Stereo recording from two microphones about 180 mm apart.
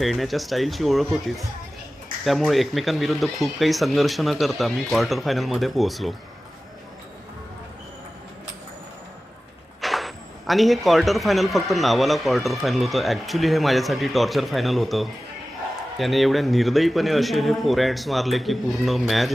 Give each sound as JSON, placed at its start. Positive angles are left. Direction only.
{"t": 0.0, "sound": "speech", "side_deg": 0}
{"t": 2.2, "sound": "speech", "side_deg": 0}
{"t": 9.8, "sound": "speech", "side_deg": 0}